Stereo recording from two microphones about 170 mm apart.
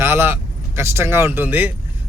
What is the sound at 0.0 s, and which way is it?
Speech, 15° right (ahead or behind).